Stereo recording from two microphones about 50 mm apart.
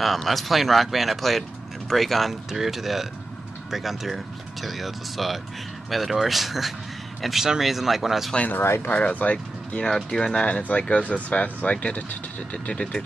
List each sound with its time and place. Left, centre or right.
0.0 s speech: centre
8.9 s speech: left
9.8 s speech: centre
10.4 s speech: left